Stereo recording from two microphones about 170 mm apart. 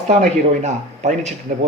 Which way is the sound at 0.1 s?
45° right (ahead or behind).